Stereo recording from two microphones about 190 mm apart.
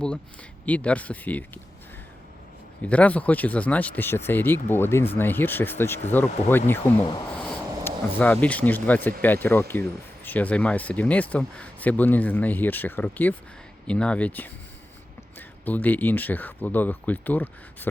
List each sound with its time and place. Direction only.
0.6 s speech: 5° left (ahead or behind)
2.8 s speech: 5° left (ahead or behind)
7.3 s a sound: 5° left (ahead or behind)
7.9 s speech: 10° left (ahead or behind)